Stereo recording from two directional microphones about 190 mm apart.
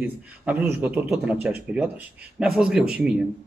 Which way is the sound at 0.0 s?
10° right (ahead or behind).